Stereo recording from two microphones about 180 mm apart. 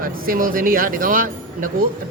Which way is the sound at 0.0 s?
50° right (ahead or behind).